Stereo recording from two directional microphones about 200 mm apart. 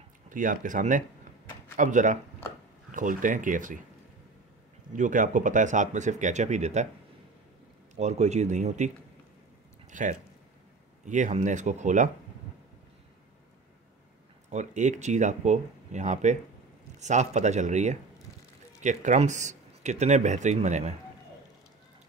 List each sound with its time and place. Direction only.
0.3 s speech: 40° right (ahead or behind)
4.9 s speech: 40° right (ahead or behind)
7.9 s speech: 35° right (ahead or behind)
14.5 s speech: 35° right (ahead or behind)